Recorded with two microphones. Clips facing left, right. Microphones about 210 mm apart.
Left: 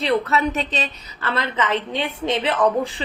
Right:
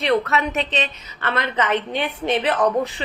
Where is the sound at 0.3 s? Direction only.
35° left (ahead or behind).